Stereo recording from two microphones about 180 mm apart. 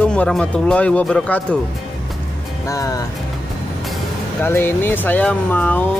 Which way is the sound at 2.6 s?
20° left (ahead or behind).